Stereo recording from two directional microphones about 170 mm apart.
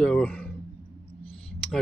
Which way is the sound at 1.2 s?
35° left (ahead or behind).